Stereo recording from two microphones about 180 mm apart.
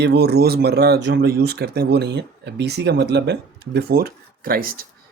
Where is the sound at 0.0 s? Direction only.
65° right (ahead or behind).